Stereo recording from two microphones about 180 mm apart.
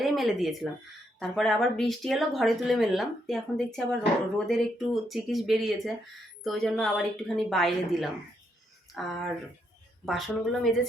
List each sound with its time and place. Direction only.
0.0 s speech: centre (ahead or behind)